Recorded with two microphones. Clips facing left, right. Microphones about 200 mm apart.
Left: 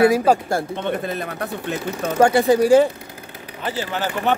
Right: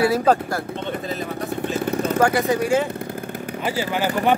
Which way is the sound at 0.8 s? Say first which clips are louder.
Left 2 dB; 60° left (ahead or behind).